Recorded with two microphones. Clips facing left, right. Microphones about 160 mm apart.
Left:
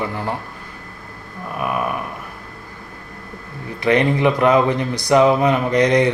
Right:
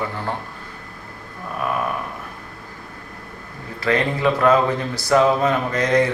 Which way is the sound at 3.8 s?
20° left (ahead or behind).